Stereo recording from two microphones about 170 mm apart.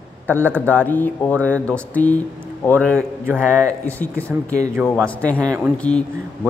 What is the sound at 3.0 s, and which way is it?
Speech, 10° right (ahead or behind).